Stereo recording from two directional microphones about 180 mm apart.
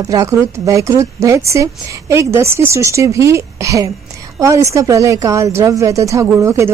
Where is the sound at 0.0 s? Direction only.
20° right (ahead or behind).